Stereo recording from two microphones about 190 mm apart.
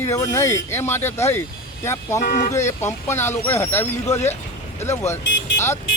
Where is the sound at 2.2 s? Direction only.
45° left (ahead or behind).